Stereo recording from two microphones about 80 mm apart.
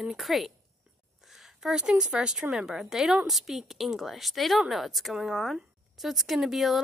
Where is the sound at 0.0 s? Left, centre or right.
Centre.